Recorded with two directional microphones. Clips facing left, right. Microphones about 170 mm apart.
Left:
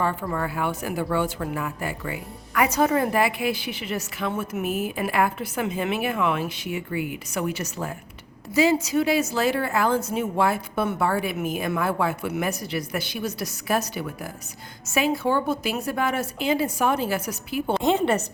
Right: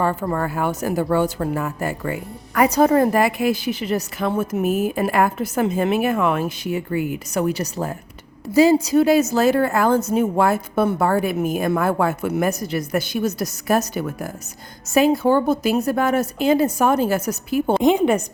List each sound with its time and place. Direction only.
0.0 s a woman's voice: 45° right (ahead or behind)
17.7 s a woman's voice: 15° right (ahead or behind)